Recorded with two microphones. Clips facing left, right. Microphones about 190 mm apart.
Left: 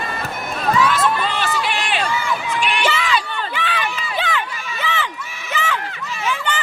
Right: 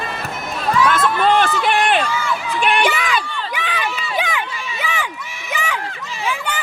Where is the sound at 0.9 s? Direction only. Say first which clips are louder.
Right 4 dB; 55° right (ahead or behind).